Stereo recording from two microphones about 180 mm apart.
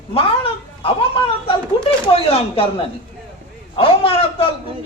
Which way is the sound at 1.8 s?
30° left (ahead or behind).